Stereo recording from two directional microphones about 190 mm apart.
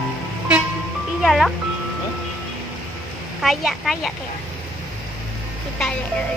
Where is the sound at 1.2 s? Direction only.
Centre (ahead or behind).